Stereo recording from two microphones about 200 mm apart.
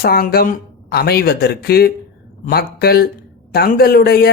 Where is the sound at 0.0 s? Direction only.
50° left (ahead or behind).